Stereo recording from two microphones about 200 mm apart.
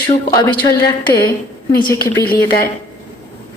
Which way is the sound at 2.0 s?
50° left (ahead or behind).